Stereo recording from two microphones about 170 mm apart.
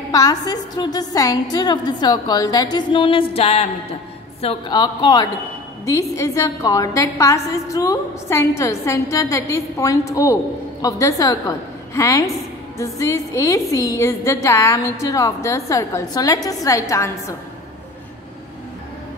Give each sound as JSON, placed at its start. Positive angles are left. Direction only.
{"t": 0.1, "sound": "a woman's voice", "side_deg": 20}